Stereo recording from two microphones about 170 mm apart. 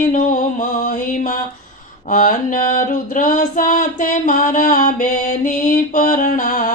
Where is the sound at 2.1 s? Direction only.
50° left (ahead or behind).